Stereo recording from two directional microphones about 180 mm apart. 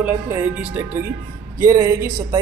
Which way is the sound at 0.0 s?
10° right (ahead or behind).